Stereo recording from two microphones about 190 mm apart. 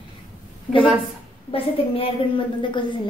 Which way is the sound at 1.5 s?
25° left (ahead or behind).